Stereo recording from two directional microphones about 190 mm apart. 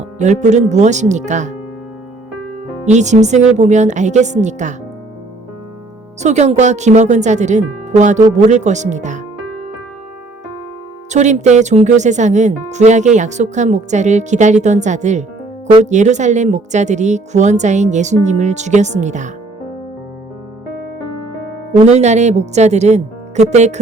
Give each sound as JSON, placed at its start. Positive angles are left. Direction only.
{"t": 0.2, "sound": "speech", "side_deg": -40}
{"t": 2.8, "sound": "speech", "side_deg": -40}
{"t": 6.2, "sound": "speech", "side_deg": -35}
{"t": 11.1, "sound": "speech", "side_deg": -40}
{"t": 21.8, "sound": "speech", "side_deg": -35}